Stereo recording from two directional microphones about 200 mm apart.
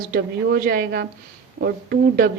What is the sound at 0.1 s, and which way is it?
Speech, 45° right (ahead or behind).